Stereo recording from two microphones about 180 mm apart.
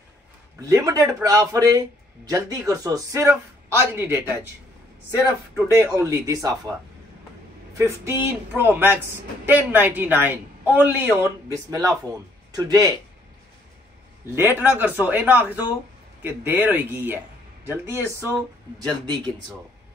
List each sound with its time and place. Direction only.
0.6 s speech: 20° right (ahead or behind)
5.8 s speech: 15° right (ahead or behind)
7.7 s speech: 15° right (ahead or behind)
14.3 s speech: 10° right (ahead or behind)